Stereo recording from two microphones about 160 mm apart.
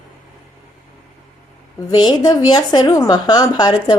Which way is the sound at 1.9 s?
25° left (ahead or behind).